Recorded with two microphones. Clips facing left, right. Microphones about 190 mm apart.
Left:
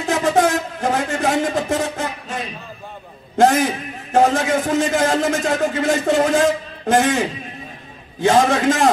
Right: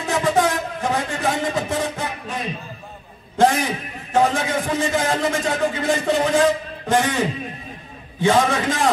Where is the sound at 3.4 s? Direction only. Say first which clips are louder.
Left 3 dB; 45° left (ahead or behind).